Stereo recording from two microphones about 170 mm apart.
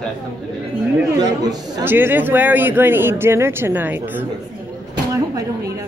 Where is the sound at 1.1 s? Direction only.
20° right (ahead or behind).